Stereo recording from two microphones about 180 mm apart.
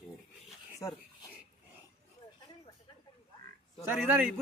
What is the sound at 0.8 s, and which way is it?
Speech, 20° left (ahead or behind).